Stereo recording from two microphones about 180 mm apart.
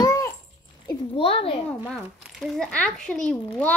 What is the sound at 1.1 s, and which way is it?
Speech, 30° left (ahead or behind).